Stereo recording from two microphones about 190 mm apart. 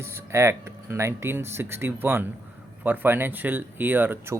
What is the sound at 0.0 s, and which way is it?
Speech, 15° right (ahead or behind).